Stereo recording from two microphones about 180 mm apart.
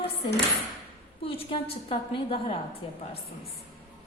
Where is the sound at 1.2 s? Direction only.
30° left (ahead or behind).